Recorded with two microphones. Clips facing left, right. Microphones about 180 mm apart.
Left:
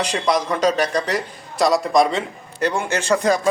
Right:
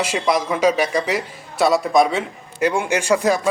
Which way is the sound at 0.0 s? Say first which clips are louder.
Even; 5° right (ahead or behind).